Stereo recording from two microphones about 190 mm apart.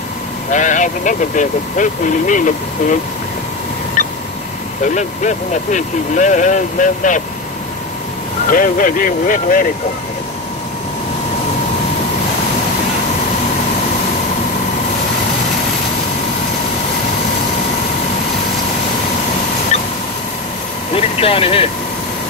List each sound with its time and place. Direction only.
0.5 s speech: 40° left (ahead or behind)
4.8 s speech: 40° left (ahead or behind)
8.5 s speech: 45° left (ahead or behind)
19.7 s vehicle: 35° left (ahead or behind)
20.9 s speech: 30° left (ahead or behind)